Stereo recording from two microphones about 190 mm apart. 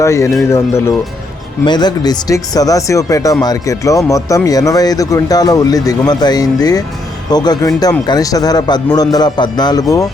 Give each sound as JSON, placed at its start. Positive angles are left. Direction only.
{"t": 0.0, "sound": "speech", "side_deg": 15}